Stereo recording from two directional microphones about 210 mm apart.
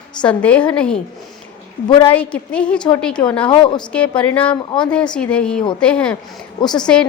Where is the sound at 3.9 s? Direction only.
5° left (ahead or behind).